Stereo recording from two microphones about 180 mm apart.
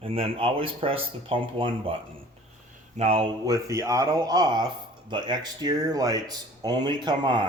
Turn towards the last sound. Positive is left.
turn(degrees=-25)  # may be behind; listen again after turning